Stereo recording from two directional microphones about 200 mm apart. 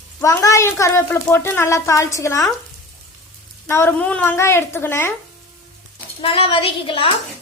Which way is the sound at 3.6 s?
10° left (ahead or behind).